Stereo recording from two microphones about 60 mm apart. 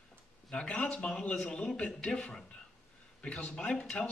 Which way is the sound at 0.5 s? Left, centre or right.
Centre.